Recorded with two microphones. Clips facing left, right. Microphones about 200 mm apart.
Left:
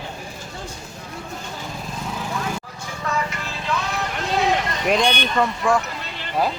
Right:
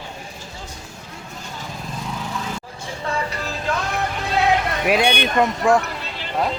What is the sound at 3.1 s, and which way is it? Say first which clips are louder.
Music: right 1 dB; 30° right (ahead or behind).